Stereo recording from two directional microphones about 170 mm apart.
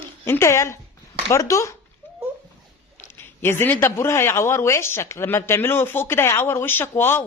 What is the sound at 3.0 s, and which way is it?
Speech, 15° left (ahead or behind).